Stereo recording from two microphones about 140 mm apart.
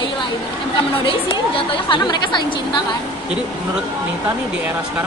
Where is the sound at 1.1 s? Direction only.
40° left (ahead or behind).